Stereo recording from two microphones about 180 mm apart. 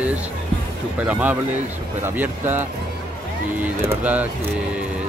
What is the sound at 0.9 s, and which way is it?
Speech, 10° right (ahead or behind).